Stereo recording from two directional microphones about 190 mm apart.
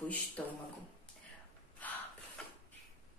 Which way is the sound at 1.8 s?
10° left (ahead or behind).